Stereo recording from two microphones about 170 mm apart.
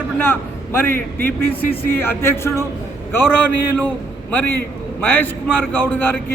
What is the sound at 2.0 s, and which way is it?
A man's voice, 15° left (ahead or behind).